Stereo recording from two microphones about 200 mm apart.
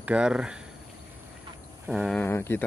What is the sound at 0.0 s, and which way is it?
Speech, 5° right (ahead or behind).